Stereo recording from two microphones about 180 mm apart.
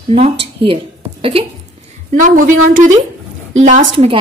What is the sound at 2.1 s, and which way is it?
Speech, 45° right (ahead or behind).